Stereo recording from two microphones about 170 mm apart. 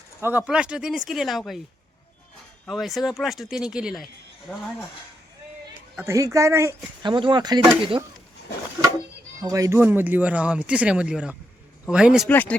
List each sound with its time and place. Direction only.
0.2 s speech: 10° right (ahead or behind)
2.6 s speech: centre (ahead or behind)
6.0 s speech: 20° right (ahead or behind)
7.0 s speech: 30° right (ahead or behind)
9.4 s speech: 20° right (ahead or behind); by 12.3 s 5° right (ahead or behind)
12.3 s speech: 10° left (ahead or behind)